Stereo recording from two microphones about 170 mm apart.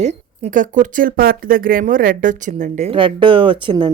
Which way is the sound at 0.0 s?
40° right (ahead or behind).